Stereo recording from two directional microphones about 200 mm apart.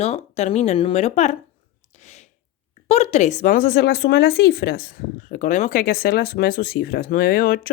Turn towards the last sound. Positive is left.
turn(degrees=45)  # may be behind; listen again after turning